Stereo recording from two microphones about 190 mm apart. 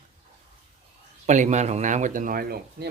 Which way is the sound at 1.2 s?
40° right (ahead or behind).